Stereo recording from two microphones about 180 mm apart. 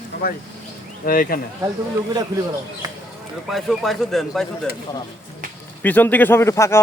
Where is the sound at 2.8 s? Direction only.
20° right (ahead or behind).